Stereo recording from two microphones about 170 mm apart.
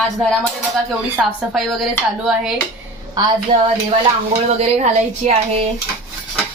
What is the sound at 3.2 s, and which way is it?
Speech, 20° right (ahead or behind).